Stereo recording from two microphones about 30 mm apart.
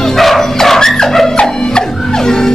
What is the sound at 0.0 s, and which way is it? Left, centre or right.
Dog, centre.